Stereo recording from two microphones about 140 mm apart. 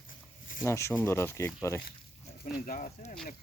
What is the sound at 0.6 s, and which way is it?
Speech, 20° left (ahead or behind).